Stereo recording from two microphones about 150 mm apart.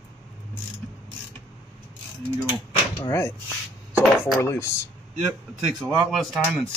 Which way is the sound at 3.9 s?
5° right (ahead or behind).